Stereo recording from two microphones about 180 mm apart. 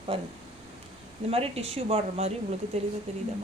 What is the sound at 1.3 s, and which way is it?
Speech, 35° right (ahead or behind).